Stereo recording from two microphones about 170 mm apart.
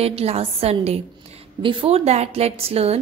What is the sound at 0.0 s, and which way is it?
A woman's voice, 35° right (ahead or behind).